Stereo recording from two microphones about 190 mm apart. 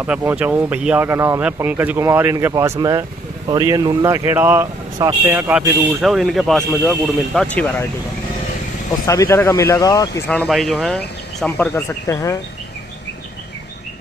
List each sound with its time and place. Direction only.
0.0 s speech: 10° right (ahead or behind); by 7.7 s 5° left (ahead or behind)
9.0 s speech: 15° left (ahead or behind)
11.7 s speech: 15° left (ahead or behind)